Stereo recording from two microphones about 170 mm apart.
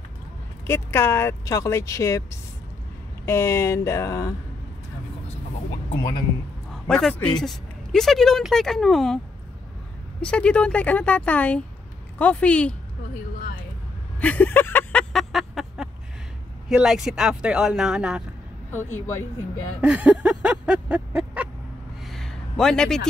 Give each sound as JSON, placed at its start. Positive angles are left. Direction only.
{"t": 0.7, "sound": "speech", "side_deg": 15}
{"t": 3.3, "sound": "speech", "side_deg": 15}
{"t": 5.9, "sound": "speech", "side_deg": 30}
{"t": 6.7, "sound": "speech", "side_deg": 5}
{"t": 10.2, "sound": "speech", "side_deg": 5}
{"t": 14.2, "sound": "a sound", "side_deg": 10}
{"t": 16.6, "sound": "speech", "side_deg": -5}
{"t": 18.7, "sound": "speech", "side_deg": 10}
{"t": 19.8, "sound": "a sound", "side_deg": -5}
{"t": 22.0, "sound": "a sound", "side_deg": 0}